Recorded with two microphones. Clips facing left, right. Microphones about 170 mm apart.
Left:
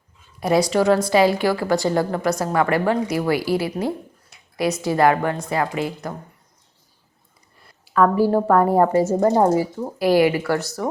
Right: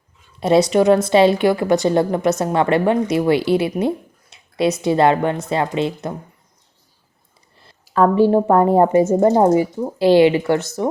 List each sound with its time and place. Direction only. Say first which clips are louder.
0.3 s a woman's voice: right 4 dB; 25° right (ahead or behind)
7.6 s a woman's voice: right 2 dB; 30° right (ahead or behind)